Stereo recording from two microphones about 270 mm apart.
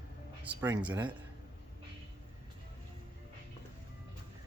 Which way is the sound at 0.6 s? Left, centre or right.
Centre.